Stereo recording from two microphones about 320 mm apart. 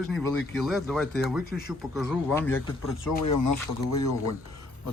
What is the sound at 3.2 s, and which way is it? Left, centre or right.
Speech, left.